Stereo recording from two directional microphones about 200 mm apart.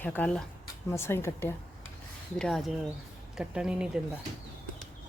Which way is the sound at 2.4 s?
Centre (ahead or behind).